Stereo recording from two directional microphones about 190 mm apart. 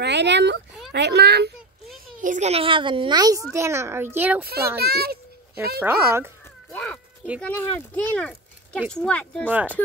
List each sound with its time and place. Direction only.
0.0 s speech: 65° right (ahead or behind)
2.2 s a woman's voice: 40° right (ahead or behind); by 4.5 s 10° right (ahead or behind)
4.7 s speech: 55° right (ahead or behind)
5.8 s speech: 10° right (ahead or behind)
6.7 s meow: 5° left (ahead or behind)
7.4 s speech: 10° left (ahead or behind)